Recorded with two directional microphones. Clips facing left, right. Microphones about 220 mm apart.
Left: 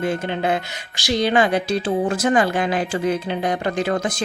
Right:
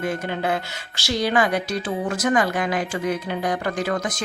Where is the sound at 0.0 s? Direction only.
25° left (ahead or behind).